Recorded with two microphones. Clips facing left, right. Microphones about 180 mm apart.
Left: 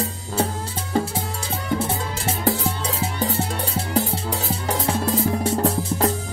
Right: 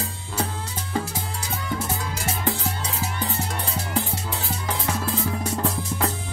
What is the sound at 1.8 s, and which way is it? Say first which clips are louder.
Music: left 3 dB; 35° left (ahead or behind).